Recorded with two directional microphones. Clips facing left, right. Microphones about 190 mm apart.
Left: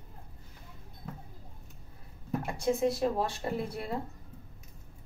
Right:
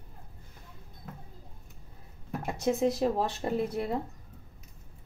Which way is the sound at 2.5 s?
20° right (ahead or behind).